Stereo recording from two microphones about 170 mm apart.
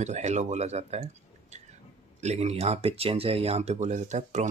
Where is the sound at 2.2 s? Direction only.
40° right (ahead or behind).